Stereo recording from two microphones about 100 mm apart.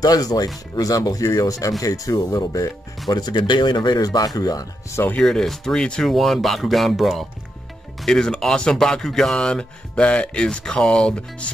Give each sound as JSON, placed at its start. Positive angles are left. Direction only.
{"t": 0.0, "sound": "speech", "side_deg": 40}
{"t": 5.2, "sound": "speech", "side_deg": 5}